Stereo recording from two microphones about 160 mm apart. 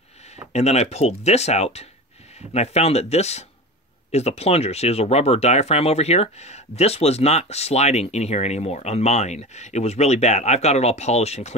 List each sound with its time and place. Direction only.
0.5 s speech: 45° left (ahead or behind)